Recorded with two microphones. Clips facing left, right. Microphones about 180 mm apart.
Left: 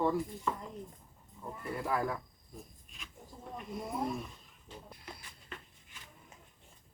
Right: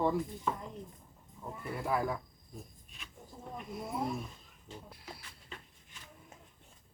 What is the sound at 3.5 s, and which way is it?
Speech, 5° right (ahead or behind).